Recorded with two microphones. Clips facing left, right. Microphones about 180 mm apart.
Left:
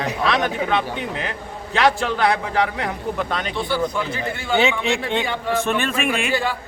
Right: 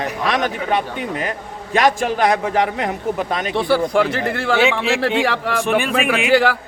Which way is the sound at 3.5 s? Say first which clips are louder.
Right 6 dB; 75° right (ahead or behind).